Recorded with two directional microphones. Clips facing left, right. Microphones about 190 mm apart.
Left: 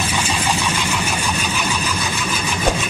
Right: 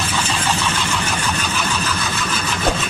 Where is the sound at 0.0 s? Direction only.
10° left (ahead or behind).